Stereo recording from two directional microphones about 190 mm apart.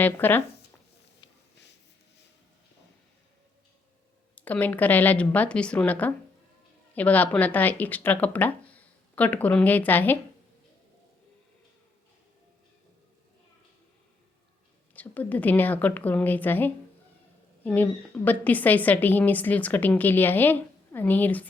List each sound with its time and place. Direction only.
0.0 s a woman's voice: 10° left (ahead or behind)
1.2 s a sound: 25° left (ahead or behind)
4.4 s a woman's voice: 10° left (ahead or behind)
14.9 s a woman's voice: 10° left (ahead or behind)